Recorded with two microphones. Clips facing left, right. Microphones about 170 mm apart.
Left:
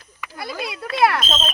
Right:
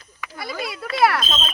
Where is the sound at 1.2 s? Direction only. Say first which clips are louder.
Left 2 dB; 20° left (ahead or behind).